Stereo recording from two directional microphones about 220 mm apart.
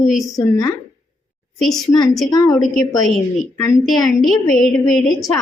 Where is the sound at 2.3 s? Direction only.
15° left (ahead or behind).